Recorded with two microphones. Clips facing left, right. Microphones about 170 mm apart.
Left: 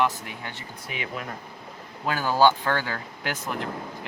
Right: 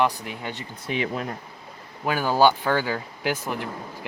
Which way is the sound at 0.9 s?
30° right (ahead or behind).